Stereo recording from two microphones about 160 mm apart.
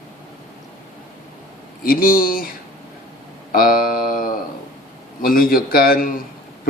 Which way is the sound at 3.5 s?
65° left (ahead or behind).